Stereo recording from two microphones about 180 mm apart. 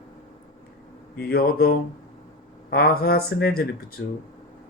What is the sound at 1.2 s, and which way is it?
Speech, 60° left (ahead or behind).